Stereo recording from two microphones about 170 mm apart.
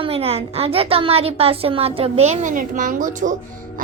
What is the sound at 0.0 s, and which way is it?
A child's voice, 35° right (ahead or behind).